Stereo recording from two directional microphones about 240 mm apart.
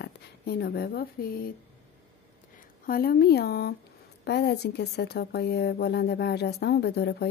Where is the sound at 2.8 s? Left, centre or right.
Left.